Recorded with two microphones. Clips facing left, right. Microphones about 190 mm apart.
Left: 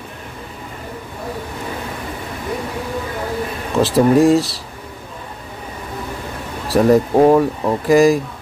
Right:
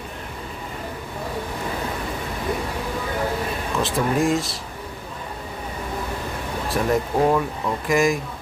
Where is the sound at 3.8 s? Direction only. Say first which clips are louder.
Left 10 dB; 35° left (ahead or behind).